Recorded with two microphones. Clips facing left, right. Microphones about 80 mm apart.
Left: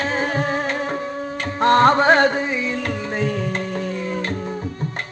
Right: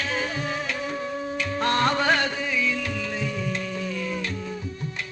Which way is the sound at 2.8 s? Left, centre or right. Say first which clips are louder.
Left 6 dB; left.